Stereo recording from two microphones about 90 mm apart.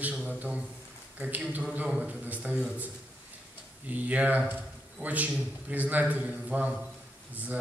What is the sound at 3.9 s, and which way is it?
A man's voice, 15° right (ahead or behind).